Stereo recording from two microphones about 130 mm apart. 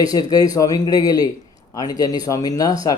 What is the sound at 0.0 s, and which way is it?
Speech, 30° left (ahead or behind).